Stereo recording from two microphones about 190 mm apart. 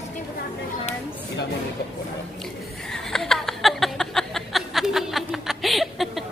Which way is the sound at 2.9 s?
5° left (ahead or behind).